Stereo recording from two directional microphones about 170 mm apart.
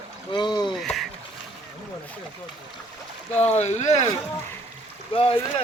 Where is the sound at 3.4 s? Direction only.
40° left (ahead or behind).